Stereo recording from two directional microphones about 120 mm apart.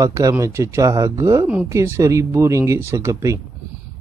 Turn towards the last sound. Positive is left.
turn(degrees=-25)  # may be behind; listen again after turning